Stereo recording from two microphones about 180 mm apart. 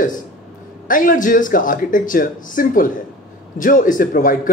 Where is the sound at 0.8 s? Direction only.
50° left (ahead or behind).